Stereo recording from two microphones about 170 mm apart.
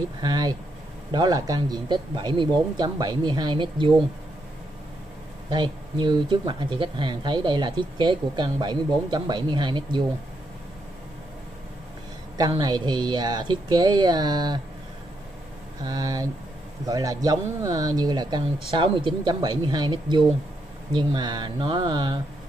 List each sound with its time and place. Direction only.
0.2 s speech: 25° right (ahead or behind)
5.5 s speech: 25° right (ahead or behind)
12.4 s speech: 25° right (ahead or behind)
15.8 s speech: 20° right (ahead or behind)